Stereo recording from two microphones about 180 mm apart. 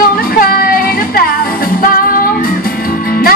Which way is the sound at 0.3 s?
55° left (ahead or behind).